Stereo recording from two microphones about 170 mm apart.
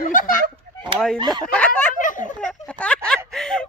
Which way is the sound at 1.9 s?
50° left (ahead or behind).